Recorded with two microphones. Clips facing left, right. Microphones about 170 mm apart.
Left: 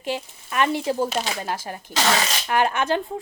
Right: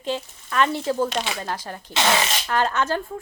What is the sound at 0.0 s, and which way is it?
Speech, 10° left (ahead or behind).